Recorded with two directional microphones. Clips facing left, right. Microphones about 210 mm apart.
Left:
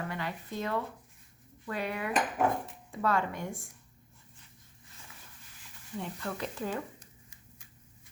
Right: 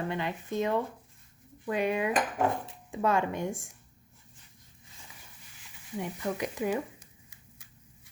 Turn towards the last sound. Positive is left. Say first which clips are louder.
# left 1 dB
turn(degrees=-10)  # may be behind; listen again after turning